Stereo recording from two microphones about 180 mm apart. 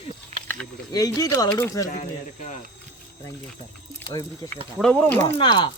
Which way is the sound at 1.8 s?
45° left (ahead or behind).